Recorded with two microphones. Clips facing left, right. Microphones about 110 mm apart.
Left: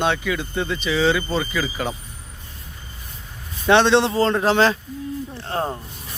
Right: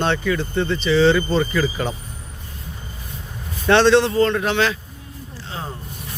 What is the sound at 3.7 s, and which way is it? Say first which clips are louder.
A man's voice: right 1 dB; 15° left (ahead or behind).